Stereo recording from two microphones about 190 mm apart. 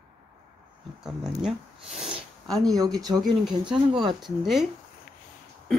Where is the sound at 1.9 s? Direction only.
30° right (ahead or behind).